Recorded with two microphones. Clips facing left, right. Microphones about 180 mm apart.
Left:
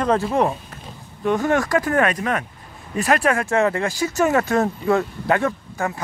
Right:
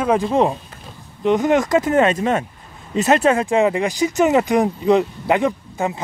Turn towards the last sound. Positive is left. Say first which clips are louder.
# right 3 dB
turn(degrees=-20)  # may be behind; listen again after turning